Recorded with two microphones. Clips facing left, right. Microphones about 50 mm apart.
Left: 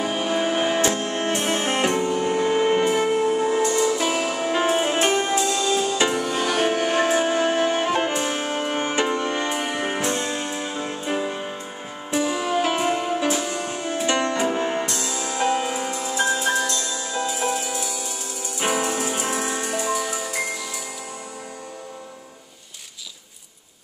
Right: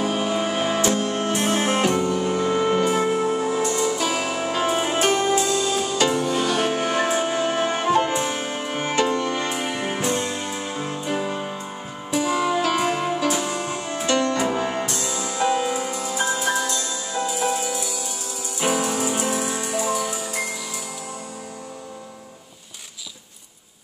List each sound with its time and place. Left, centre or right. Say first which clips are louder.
0.0 s music: even; left
1.8 s music: right 1 dB; left
5.5 s music: left 1 dB; left
5.9 s music: right 1 dB; left
8.8 s music: right 5 dB; left
10.5 s music: even; centre
11.1 s music: even; centre
12.5 s music: even; left
13.3 s music: even; right
14.0 s music: right 1 dB; left
14.6 s music: left 1 dB; centre
15.2 s music: right 1 dB; left
19.8 s music: right 2 dB; centre